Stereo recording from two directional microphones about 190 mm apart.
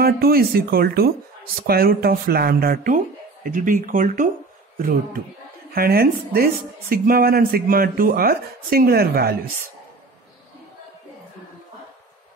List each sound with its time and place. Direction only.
0.0 s speech: 55° right (ahead or behind)